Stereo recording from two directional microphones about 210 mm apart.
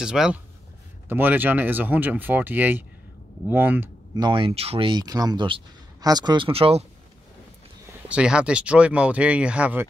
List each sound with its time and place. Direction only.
0.0 s speech: 5° right (ahead or behind); by 6.8 s 25° right (ahead or behind)
8.1 s speech: 5° right (ahead or behind)